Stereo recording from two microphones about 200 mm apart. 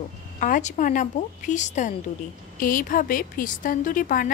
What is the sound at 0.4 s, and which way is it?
A woman's voice, 40° left (ahead or behind).